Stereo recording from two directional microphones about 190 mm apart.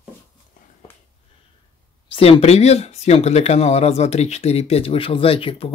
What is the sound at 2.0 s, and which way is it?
Speech, 25° left (ahead or behind).